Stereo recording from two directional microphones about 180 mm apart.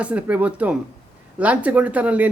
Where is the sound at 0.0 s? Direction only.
5° right (ahead or behind).